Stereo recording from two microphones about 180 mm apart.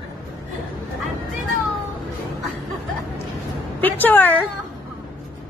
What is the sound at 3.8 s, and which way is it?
Speech, 10° left (ahead or behind).